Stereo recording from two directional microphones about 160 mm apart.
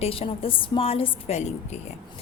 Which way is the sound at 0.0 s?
35° left (ahead or behind).